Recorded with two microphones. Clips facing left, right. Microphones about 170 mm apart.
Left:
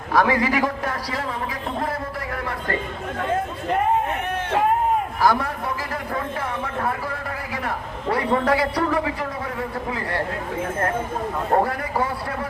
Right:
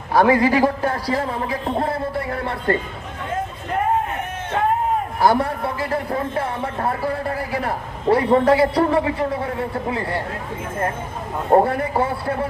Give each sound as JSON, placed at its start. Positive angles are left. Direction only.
{"t": 0.1, "sound": "a man's voice", "side_deg": -30}
{"t": 5.2, "sound": "speech", "side_deg": -30}
{"t": 11.5, "sound": "speech", "side_deg": -30}